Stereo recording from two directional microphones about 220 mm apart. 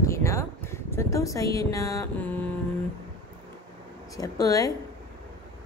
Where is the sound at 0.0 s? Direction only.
15° left (ahead or behind).